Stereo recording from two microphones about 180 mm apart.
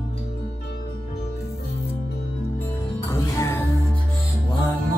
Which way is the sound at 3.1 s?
15° left (ahead or behind).